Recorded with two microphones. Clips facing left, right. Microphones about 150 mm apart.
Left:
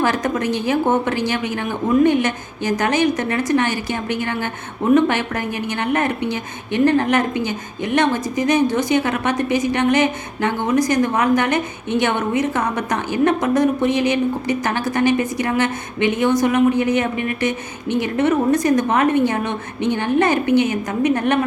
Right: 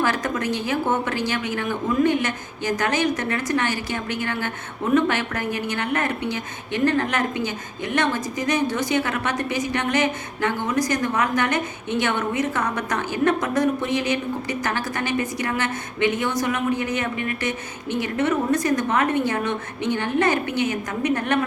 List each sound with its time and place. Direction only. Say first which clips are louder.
0.0 s a woman's voice: left 4 dB; 25° left (ahead or behind)
4.9 s a woman's voice: left 4 dB; 20° left (ahead or behind)